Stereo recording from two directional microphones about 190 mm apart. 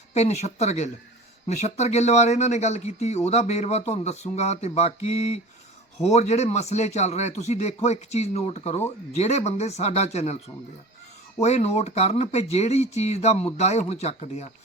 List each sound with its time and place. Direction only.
0.1 s speech: 35° left (ahead or behind)